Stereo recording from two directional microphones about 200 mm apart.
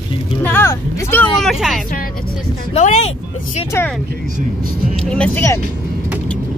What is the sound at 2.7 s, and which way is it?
Speech, 35° left (ahead or behind).